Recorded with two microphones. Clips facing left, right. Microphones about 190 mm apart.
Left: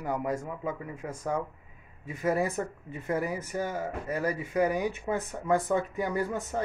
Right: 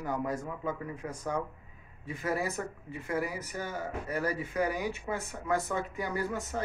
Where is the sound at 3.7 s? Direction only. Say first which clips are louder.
Left 3 dB; 20° left (ahead or behind).